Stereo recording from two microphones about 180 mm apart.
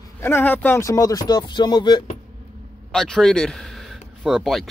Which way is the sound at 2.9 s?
5° left (ahead or behind).